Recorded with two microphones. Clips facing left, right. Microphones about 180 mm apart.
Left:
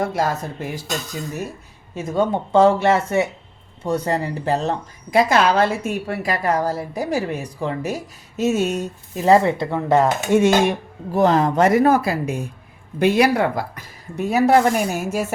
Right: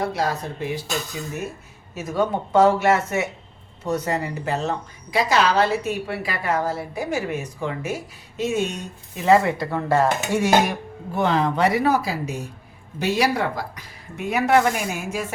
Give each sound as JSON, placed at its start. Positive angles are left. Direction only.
{"t": 0.0, "sound": "speech", "side_deg": 50}
{"t": 2.0, "sound": "a woman's voice", "side_deg": 25}
{"t": 5.1, "sound": "a woman's voice", "side_deg": 50}
{"t": 11.1, "sound": "speech", "side_deg": 40}
{"t": 14.2, "sound": "a woman's voice", "side_deg": 35}